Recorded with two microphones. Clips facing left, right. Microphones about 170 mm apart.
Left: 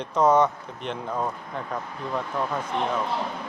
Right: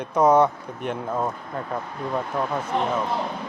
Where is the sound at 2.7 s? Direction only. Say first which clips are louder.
Right 3 dB; 40° right (ahead or behind).